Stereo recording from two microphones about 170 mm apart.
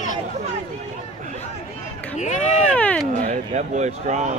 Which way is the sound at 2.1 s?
45° left (ahead or behind).